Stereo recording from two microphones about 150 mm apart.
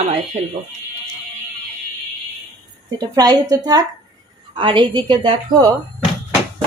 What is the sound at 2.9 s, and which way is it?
A woman's voice, 25° right (ahead or behind).